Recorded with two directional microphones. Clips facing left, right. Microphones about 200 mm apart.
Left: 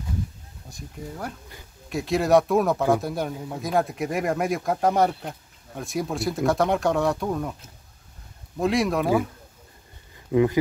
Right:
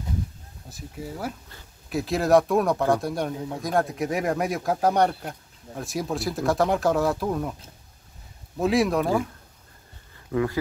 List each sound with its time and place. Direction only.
0.7 s speech: 5° right (ahead or behind)
8.5 s speech: centre (ahead or behind)
10.3 s speech: 20° left (ahead or behind)